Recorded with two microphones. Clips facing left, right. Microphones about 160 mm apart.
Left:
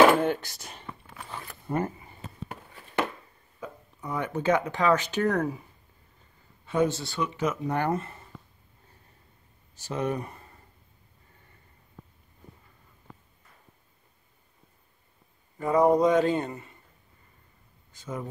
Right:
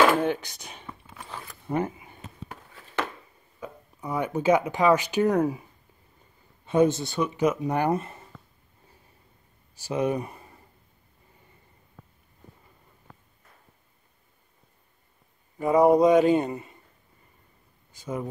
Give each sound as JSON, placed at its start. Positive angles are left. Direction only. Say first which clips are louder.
{"t": 0.2, "sound": "speech", "louder": "right 1 dB", "side_deg": 5}
{"t": 2.1, "sound": "a sound", "louder": "left 2 dB", "side_deg": 5}
{"t": 3.6, "sound": "speech", "louder": "right 2 dB", "side_deg": -10}
{"t": 6.6, "sound": "speech", "louder": "right 4 dB", "side_deg": -20}
{"t": 9.8, "sound": "speech", "louder": "right 4 dB", "side_deg": -10}
{"t": 15.5, "sound": "speech", "louder": "right 3 dB", "side_deg": -10}
{"t": 17.9, "sound": "speech", "louder": "right 4 dB", "side_deg": -10}